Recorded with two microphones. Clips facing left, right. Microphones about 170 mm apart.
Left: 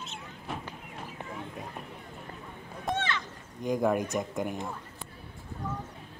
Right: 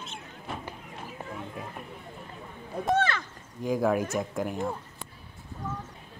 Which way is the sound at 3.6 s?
5° right (ahead or behind).